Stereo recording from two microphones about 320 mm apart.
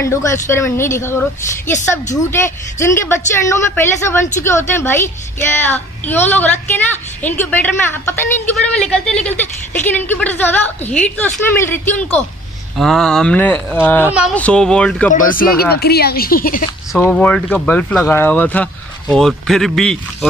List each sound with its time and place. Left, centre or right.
0.0 s a woman's voice: centre
15.1 s speech: left
16.9 s speech: centre